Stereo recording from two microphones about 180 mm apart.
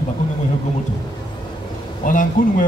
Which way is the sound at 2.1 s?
50° left (ahead or behind).